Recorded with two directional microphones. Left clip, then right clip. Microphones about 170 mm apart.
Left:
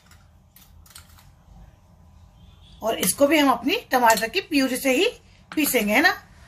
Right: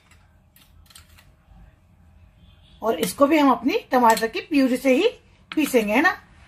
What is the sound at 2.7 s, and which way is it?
A woman's voice, 40° right (ahead or behind).